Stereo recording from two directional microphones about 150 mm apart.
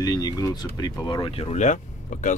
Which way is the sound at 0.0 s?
25° left (ahead or behind).